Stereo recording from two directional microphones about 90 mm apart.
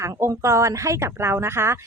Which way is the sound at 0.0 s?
30° right (ahead or behind).